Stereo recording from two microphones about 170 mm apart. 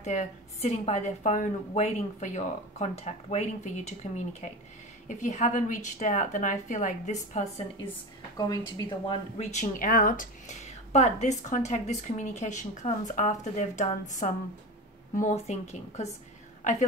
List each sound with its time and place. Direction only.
0.0 s a woman's voice: 45° left (ahead or behind)
8.4 s a woman's voice: 20° left (ahead or behind)
9.4 s a woman's voice: 45° left (ahead or behind)
10.9 s a woman's voice: 40° left (ahead or behind)